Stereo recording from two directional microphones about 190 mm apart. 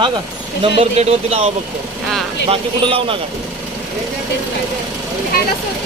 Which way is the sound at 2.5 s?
30° right (ahead or behind).